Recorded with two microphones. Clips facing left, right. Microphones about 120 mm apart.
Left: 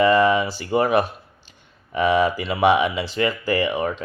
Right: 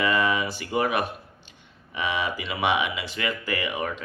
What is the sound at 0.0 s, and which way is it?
Speech, 35° left (ahead or behind).